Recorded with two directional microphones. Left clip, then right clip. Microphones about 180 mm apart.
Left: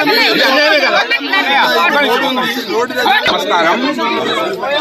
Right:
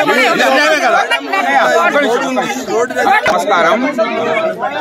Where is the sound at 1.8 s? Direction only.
65° right (ahead or behind).